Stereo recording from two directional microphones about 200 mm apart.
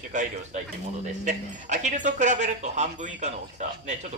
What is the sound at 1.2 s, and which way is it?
Speech, 35° right (ahead or behind).